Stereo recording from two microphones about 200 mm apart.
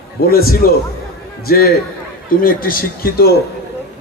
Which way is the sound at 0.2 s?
50° left (ahead or behind).